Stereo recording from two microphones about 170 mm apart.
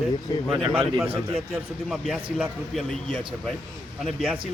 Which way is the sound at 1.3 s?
Centre (ahead or behind).